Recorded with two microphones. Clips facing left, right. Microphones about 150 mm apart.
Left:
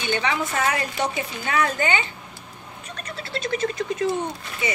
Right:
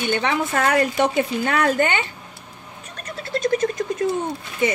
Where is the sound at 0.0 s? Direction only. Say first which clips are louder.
Right 3 dB; 55° right (ahead or behind).